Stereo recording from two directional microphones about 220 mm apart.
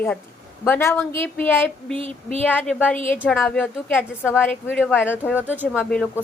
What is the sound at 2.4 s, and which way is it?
A woman's voice, 5° left (ahead or behind).